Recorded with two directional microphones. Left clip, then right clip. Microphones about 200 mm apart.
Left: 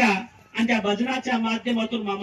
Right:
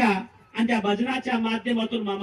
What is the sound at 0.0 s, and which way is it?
Speech, 5° left (ahead or behind).